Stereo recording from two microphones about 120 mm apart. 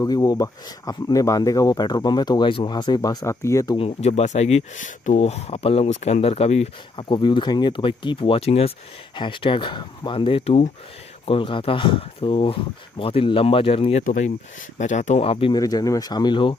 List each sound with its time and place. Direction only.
0.0 s speech: 30° left (ahead or behind)
3.6 s speech: 50° left (ahead or behind)
7.0 s speech: 40° left (ahead or behind)
14.0 s speech: 90° left
15.5 s speech: 30° left (ahead or behind)